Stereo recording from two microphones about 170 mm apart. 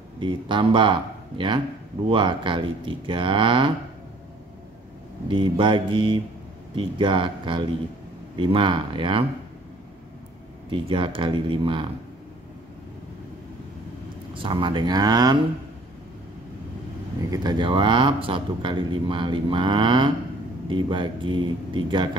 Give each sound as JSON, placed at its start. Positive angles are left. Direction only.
{"t": 0.2, "sound": "speech", "side_deg": -30}
{"t": 2.0, "sound": "speech", "side_deg": -30}
{"t": 5.3, "sound": "speech", "side_deg": -30}
{"t": 10.7, "sound": "speech", "side_deg": -30}
{"t": 14.3, "sound": "speech", "side_deg": -30}
{"t": 17.2, "sound": "speech", "side_deg": -20}